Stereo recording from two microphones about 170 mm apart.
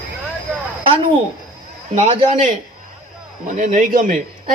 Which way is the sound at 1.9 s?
40° right (ahead or behind).